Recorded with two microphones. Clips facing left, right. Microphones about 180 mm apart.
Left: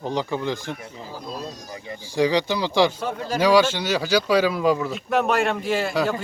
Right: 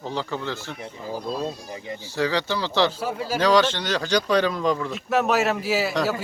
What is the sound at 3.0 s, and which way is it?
Speech, 5° right (ahead or behind).